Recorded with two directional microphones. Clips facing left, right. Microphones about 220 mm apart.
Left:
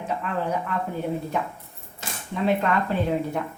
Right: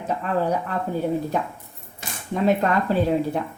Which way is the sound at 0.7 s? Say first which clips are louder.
Right 1 dB; 35° right (ahead or behind).